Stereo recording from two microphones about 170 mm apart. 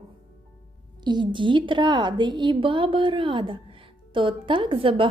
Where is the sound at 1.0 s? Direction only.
25° right (ahead or behind).